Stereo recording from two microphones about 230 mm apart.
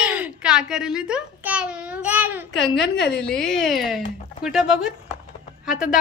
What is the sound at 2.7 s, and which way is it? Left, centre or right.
Speech, left.